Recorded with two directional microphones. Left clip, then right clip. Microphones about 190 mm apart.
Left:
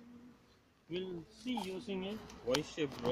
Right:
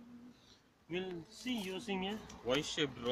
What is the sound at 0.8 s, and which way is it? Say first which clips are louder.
Speech: even; 5° right (ahead or behind).